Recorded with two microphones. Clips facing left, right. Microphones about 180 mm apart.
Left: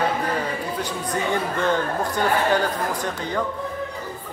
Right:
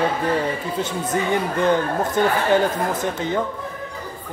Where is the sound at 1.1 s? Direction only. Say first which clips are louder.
Right 2 dB; 20° right (ahead or behind).